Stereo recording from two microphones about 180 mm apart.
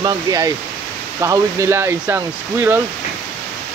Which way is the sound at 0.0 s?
20° right (ahead or behind).